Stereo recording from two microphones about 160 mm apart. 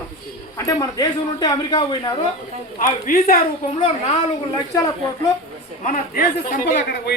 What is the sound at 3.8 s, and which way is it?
Speech, 40° left (ahead or behind).